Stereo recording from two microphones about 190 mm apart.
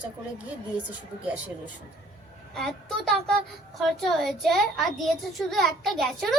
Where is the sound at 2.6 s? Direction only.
Centre (ahead or behind).